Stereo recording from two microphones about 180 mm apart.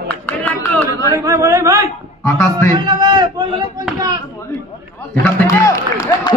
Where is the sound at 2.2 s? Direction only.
15° left (ahead or behind).